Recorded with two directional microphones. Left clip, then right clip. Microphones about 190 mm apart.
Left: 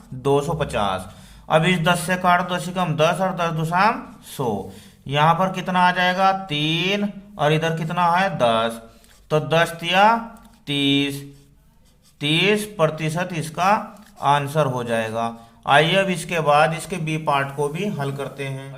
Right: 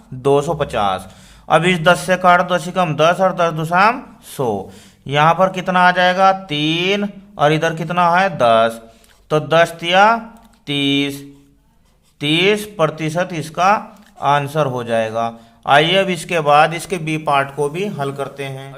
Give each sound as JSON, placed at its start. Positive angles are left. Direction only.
{"t": 0.2, "sound": "a man's voice", "side_deg": -25}
{"t": 12.2, "sound": "a man's voice", "side_deg": -20}